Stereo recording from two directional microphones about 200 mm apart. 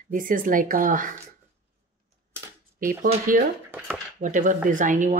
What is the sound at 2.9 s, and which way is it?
A woman's voice, 40° right (ahead or behind).